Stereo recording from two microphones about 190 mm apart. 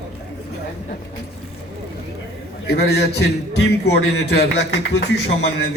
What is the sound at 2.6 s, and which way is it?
Speech, 60° left (ahead or behind).